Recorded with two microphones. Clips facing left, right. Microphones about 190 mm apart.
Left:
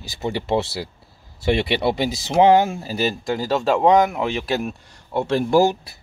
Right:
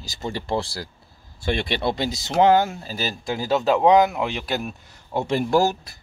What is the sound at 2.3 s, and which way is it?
Speech, 20° left (ahead or behind).